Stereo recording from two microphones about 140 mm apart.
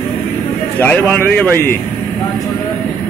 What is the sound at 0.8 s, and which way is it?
Speech, 10° left (ahead or behind).